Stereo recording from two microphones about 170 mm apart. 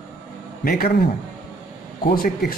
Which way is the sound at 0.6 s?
60° left (ahead or behind).